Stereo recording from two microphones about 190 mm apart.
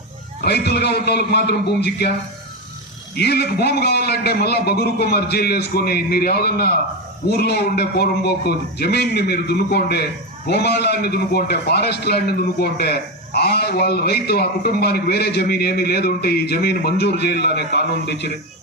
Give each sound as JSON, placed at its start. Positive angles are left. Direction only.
{"t": 0.4, "sound": "a man's voice", "side_deg": 60}
{"t": 3.2, "sound": "a man's voice", "side_deg": 60}